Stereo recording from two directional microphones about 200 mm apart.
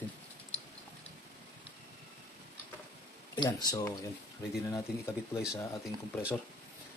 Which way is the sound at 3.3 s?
20° left (ahead or behind).